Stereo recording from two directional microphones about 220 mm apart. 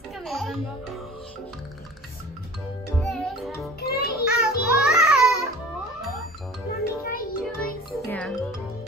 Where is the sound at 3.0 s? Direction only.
Centre (ahead or behind).